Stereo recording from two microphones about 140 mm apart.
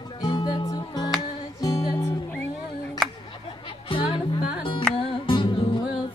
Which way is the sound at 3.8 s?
35° left (ahead or behind).